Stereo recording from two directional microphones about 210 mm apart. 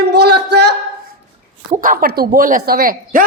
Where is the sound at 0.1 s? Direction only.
50° right (ahead or behind).